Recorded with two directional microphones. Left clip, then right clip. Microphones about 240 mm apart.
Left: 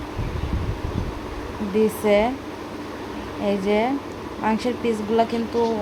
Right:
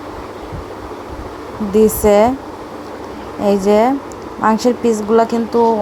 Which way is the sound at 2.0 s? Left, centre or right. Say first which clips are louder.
Right 7 dB; right.